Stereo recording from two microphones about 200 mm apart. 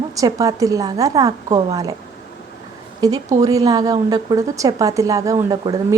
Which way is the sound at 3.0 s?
20° right (ahead or behind).